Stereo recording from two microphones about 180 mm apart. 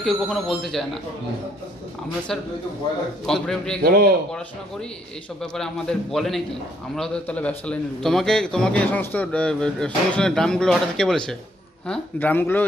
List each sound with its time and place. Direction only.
0.0 s a man's voice: centre (ahead or behind)
3.3 s a man's voice: 5° left (ahead or behind)
3.8 s a man's voice: 55° right (ahead or behind)
5.4 s a man's voice: 5° left (ahead or behind)